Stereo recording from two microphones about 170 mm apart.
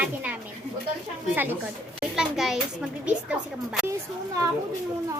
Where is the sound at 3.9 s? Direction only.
20° right (ahead or behind).